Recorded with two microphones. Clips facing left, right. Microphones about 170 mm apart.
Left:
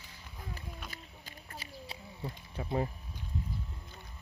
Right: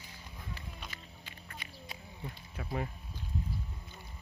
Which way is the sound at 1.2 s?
30° left (ahead or behind).